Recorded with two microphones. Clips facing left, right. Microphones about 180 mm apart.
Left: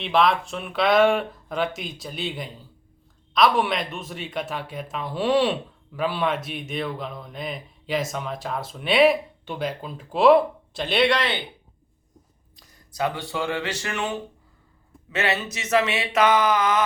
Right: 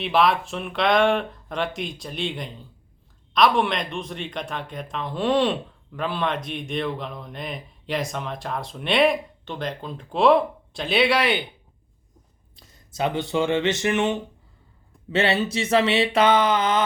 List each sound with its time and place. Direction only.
0.0 s speech: centre (ahead or behind)
12.5 s speech: 25° right (ahead or behind)